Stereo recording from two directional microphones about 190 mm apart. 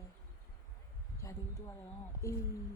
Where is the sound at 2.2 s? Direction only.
15° left (ahead or behind).